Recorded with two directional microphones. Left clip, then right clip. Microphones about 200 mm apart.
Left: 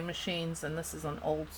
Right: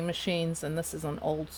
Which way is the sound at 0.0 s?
45° right (ahead or behind).